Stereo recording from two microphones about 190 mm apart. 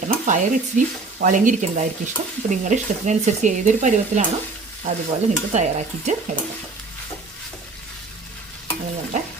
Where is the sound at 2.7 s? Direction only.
40° right (ahead or behind).